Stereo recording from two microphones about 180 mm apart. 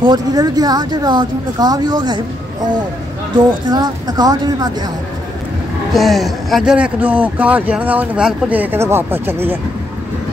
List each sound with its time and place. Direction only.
0.0 s speech: 20° right (ahead or behind)
3.3 s speech: 25° right (ahead or behind)
5.9 s speech: centre (ahead or behind)